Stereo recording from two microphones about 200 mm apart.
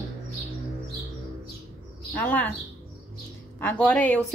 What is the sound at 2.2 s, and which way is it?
Speech, 10° left (ahead or behind).